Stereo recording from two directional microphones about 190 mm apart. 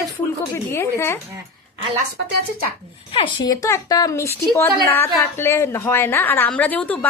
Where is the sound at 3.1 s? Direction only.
25° left (ahead or behind); by 7.0 s 5° left (ahead or behind).